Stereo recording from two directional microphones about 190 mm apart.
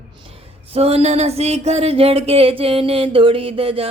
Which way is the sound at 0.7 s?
30° right (ahead or behind).